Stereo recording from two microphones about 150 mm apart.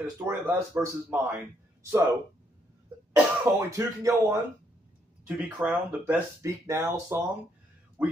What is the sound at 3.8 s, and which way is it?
Speech, 20° right (ahead or behind).